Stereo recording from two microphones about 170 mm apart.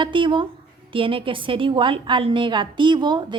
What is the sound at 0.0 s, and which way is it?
A woman's voice, 30° right (ahead or behind).